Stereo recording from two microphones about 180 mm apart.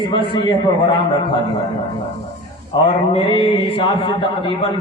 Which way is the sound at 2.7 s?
25° left (ahead or behind).